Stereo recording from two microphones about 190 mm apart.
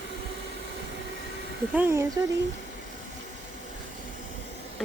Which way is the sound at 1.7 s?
10° right (ahead or behind).